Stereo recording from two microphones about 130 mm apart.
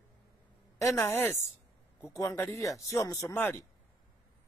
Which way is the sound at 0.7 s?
25° left (ahead or behind).